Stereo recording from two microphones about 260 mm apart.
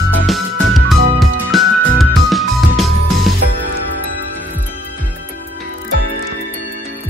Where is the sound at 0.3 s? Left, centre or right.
Centre.